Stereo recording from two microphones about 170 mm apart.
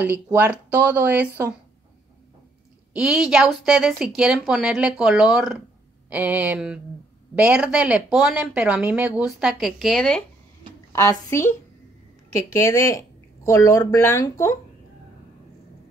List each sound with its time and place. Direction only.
0.0 s speech: 10° right (ahead or behind)
2.9 s speech: 5° right (ahead or behind)
10.9 s a woman's voice: 20° left (ahead or behind)